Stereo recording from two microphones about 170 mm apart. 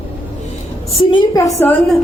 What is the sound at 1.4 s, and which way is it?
Speech, 20° left (ahead or behind).